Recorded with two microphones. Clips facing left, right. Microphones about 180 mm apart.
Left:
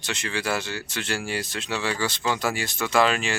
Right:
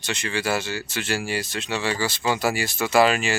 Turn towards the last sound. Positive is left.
turn(degrees=-5)  # may be behind; listen again after turning